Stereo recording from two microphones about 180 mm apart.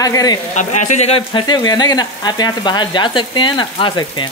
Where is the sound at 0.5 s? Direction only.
40° left (ahead or behind).